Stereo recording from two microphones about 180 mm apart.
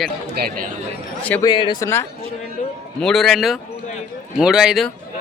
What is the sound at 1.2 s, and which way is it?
Speech, 10° left (ahead or behind).